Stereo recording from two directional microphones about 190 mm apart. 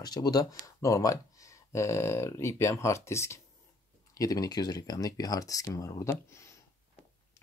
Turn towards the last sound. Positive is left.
turn(degrees=15)  # may be behind; listen again after turning